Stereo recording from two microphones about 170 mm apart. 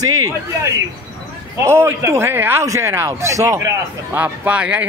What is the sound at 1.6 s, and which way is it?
A man's voice, 15° right (ahead or behind).